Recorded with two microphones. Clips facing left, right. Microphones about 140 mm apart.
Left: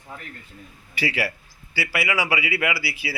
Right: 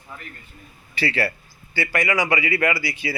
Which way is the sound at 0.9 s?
10° left (ahead or behind).